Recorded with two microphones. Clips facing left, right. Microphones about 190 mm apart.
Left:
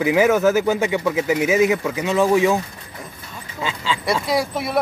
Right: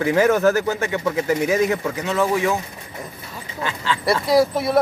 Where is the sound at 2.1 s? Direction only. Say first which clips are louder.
Left 4 dB; 15° left (ahead or behind).